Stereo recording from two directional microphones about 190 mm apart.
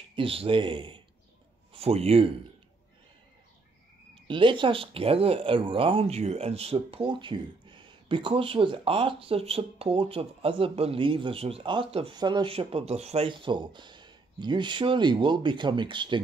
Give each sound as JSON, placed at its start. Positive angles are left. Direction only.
{"t": 0.1, "sound": "a man's voice", "side_deg": -30}
{"t": 4.1, "sound": "speech", "side_deg": -25}